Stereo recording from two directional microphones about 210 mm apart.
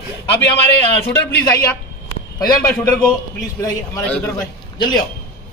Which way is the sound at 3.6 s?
10° left (ahead or behind).